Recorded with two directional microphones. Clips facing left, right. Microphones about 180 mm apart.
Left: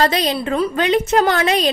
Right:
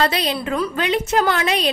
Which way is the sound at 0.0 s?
35° left (ahead or behind).